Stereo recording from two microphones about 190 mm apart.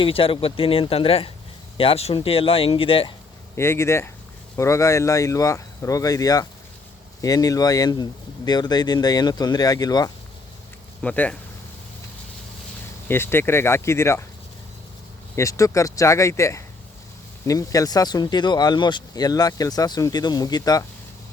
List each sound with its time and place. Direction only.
0.0 s speech: 30° left (ahead or behind)
3.5 s speech: 15° left (ahead or behind)
11.0 s speech: 5° left (ahead or behind)
13.1 s speech: 10° left (ahead or behind)
15.4 s speech: 15° left (ahead or behind)